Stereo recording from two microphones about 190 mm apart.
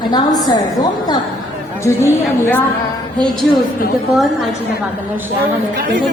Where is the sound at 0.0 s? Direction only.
20° left (ahead or behind).